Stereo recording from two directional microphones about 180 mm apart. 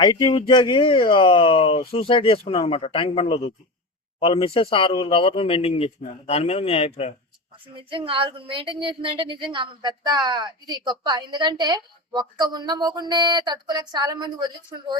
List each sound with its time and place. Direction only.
0.0 s speech: 25° left (ahead or behind)
7.8 s speech: 30° right (ahead or behind)